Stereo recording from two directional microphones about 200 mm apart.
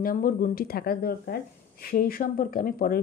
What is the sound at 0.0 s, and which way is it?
Speech, 45° left (ahead or behind).